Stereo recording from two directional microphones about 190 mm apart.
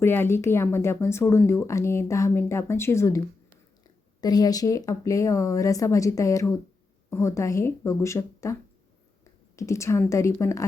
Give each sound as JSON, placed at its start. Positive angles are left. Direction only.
{"t": 0.0, "sound": "speech", "side_deg": 10}
{"t": 4.2, "sound": "speech", "side_deg": 20}
{"t": 9.6, "sound": "speech", "side_deg": 15}